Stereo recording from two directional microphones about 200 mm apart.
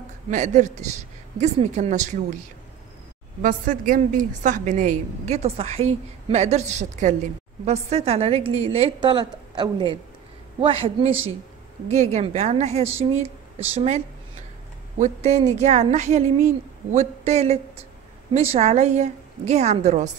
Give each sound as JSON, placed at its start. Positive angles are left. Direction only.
{"t": 0.3, "sound": "a woman's voice", "side_deg": -35}
{"t": 3.4, "sound": "a woman's voice", "side_deg": -40}